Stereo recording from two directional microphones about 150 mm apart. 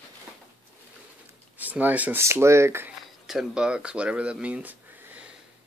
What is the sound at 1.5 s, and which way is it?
Speech, 10° right (ahead or behind).